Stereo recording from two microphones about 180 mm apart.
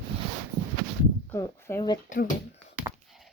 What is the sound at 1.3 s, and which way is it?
Speech, 15° left (ahead or behind).